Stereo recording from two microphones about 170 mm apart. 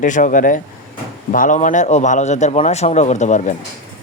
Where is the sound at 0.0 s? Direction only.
50° left (ahead or behind).